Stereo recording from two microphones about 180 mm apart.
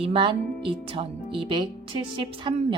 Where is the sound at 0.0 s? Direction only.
30° right (ahead or behind).